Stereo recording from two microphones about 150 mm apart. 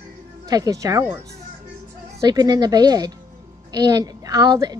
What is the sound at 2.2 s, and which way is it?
A woman's voice, 25° right (ahead or behind).